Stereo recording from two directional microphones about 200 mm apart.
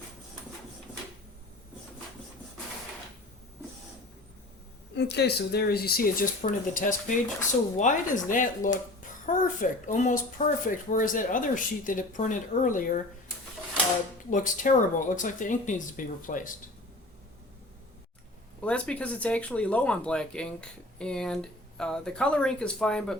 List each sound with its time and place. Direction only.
4.9 s speech: 55° left (ahead or behind); by 13.0 s 40° left (ahead or behind)
14.3 s speech: 40° left (ahead or behind)
18.6 s speech: 5° left (ahead or behind)